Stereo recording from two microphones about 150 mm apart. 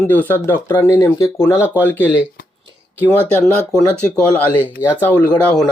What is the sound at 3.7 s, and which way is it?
Speech, 5° left (ahead or behind).